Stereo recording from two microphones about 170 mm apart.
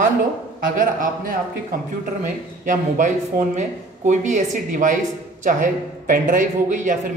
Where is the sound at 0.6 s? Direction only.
55° right (ahead or behind).